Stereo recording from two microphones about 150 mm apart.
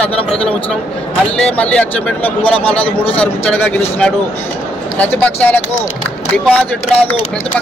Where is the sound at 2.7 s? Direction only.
40° left (ahead or behind).